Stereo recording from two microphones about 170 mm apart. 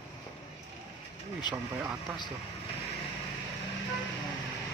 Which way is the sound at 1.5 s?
25° left (ahead or behind).